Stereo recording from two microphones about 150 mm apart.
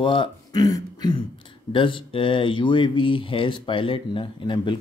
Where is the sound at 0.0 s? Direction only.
35° left (ahead or behind).